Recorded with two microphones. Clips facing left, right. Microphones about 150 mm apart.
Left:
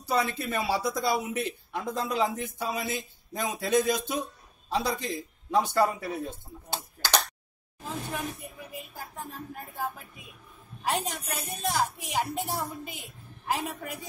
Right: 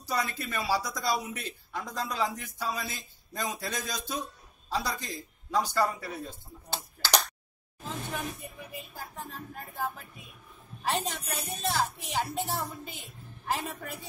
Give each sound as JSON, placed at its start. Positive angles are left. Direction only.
{"t": 0.1, "sound": "a man's voice", "side_deg": 25}
{"t": 7.8, "sound": "a woman's voice", "side_deg": 10}